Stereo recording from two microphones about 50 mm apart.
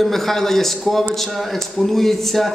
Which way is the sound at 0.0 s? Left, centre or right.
Centre.